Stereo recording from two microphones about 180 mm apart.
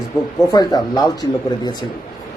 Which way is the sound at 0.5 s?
20° left (ahead or behind).